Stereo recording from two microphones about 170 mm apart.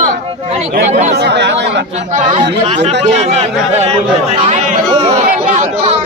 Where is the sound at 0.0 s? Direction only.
40° right (ahead or behind).